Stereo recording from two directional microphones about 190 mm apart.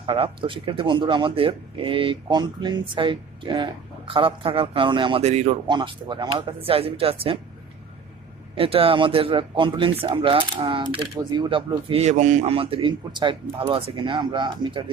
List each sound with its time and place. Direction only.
0.0 s speech: 30° right (ahead or behind)
8.5 s speech: 30° right (ahead or behind)